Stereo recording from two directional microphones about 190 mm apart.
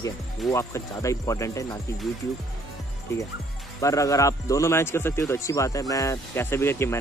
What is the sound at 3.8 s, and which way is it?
Speech, 15° left (ahead or behind).